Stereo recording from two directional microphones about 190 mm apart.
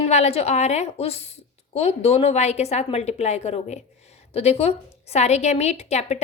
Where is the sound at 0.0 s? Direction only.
35° left (ahead or behind).